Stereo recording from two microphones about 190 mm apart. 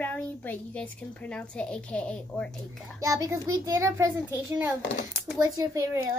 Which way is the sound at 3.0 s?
15° right (ahead or behind).